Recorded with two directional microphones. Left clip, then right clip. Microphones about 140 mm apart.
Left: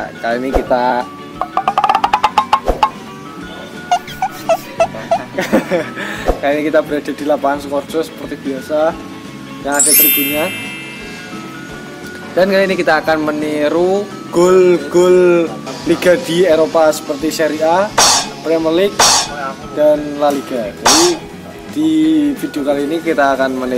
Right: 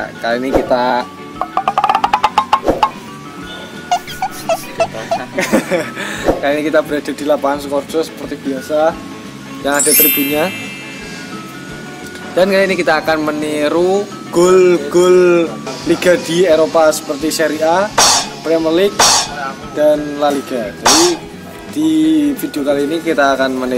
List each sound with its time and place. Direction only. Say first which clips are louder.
0.0 s music: right 1 dB; centre (ahead or behind)
3.9 s a sound: left 1 dB; 5° left (ahead or behind)
8.6 s speech: right 1 dB; 20° right (ahead or behind)
9.8 s speech: right 1 dB; centre (ahead or behind)
12.4 s speech: even; centre (ahead or behind)
16.7 s speech: even; centre (ahead or behind)